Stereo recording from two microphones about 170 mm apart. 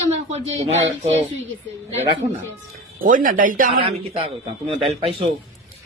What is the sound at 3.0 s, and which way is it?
Speech, 55° right (ahead or behind).